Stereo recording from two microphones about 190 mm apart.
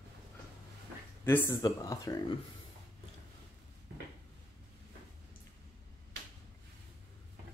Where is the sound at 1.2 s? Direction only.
10° left (ahead or behind).